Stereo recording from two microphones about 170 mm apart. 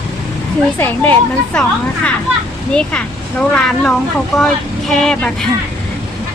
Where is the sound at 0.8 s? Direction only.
10° left (ahead or behind).